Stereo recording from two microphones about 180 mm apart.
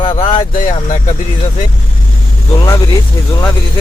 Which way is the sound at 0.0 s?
30° left (ahead or behind).